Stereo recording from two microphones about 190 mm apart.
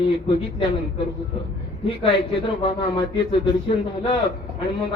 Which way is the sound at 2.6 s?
30° left (ahead or behind).